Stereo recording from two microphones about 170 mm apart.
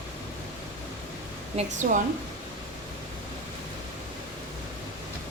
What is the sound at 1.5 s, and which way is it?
Speech, 45° right (ahead or behind).